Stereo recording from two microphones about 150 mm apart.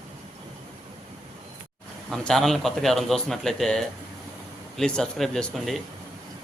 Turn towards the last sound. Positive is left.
turn(degrees=0)  # may be behind; listen again after turning